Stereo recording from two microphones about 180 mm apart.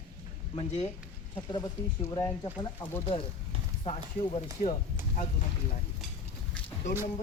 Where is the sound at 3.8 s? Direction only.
35° left (ahead or behind).